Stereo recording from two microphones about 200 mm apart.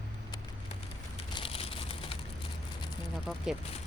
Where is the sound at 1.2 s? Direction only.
30° left (ahead or behind).